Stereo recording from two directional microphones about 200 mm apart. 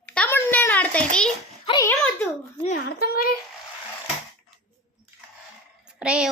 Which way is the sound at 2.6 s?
50° left (ahead or behind).